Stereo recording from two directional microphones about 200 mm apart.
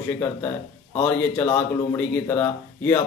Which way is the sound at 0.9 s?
15° left (ahead or behind).